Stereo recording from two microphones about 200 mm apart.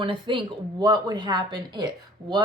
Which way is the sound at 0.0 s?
25° right (ahead or behind).